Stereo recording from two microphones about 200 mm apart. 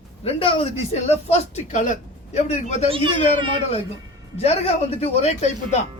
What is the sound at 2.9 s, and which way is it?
Speech, 25° right (ahead or behind).